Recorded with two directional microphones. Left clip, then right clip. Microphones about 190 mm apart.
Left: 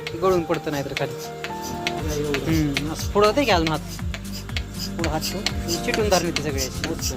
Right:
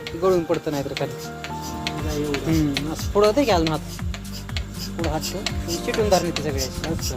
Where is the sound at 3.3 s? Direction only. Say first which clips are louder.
Even; 20° right (ahead or behind).